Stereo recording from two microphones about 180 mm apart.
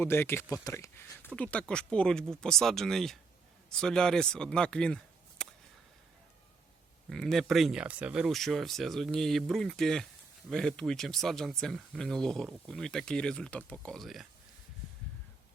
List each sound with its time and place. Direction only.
0.0 s speech: 10° left (ahead or behind)
5.4 s whip: 5° left (ahead or behind)
7.1 s speech: centre (ahead or behind)